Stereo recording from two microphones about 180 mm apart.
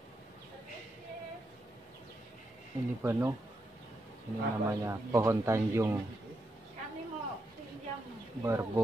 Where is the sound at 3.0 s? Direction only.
15° right (ahead or behind).